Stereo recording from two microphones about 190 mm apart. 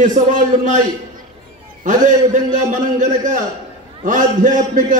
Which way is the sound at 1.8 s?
45° right (ahead or behind).